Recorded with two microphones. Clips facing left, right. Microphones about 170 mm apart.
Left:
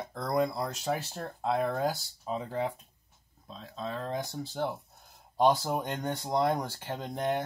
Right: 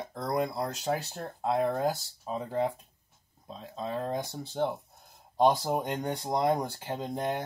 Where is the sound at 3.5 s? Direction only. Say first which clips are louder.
Right 2 dB; 15° right (ahead or behind).